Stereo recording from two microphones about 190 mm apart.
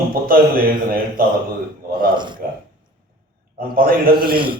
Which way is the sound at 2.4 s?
50° right (ahead or behind).